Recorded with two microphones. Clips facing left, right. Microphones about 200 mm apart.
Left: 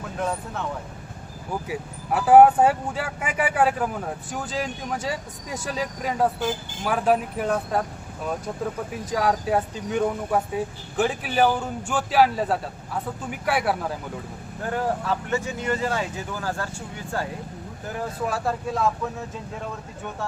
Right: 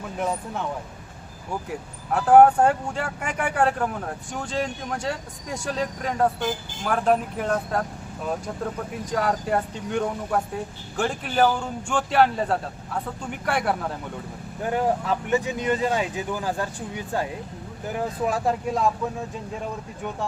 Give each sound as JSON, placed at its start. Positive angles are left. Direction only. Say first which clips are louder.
{"t": 1.6, "sound": "speech", "louder": "left 2 dB", "side_deg": 5}
{"t": 8.9, "sound": "speech", "louder": "left 1 dB", "side_deg": 5}
{"t": 14.6, "sound": "speech", "louder": "right 2 dB", "side_deg": -15}
{"t": 17.8, "sound": "speech", "louder": "right 3 dB", "side_deg": -15}